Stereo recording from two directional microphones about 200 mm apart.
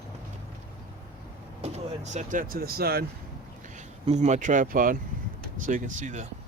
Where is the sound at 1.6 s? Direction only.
30° right (ahead or behind).